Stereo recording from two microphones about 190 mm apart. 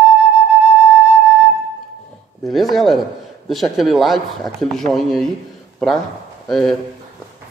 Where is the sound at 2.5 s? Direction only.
Centre (ahead or behind).